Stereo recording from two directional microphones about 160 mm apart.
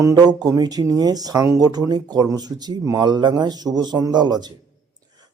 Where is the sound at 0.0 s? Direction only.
20° right (ahead or behind).